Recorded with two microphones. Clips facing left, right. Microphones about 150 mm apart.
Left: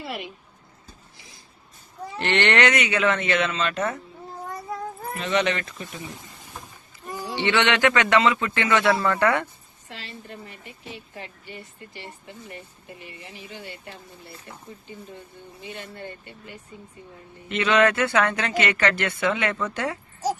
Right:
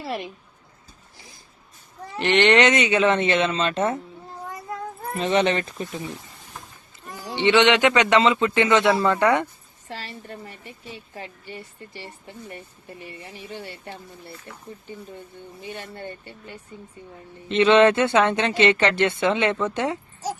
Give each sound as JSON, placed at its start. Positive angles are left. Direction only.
{"t": 2.1, "sound": "speech", "side_deg": -15}
{"t": 5.1, "sound": "speech", "side_deg": -30}
{"t": 7.3, "sound": "speech", "side_deg": -20}
{"t": 16.0, "sound": "speech", "side_deg": -30}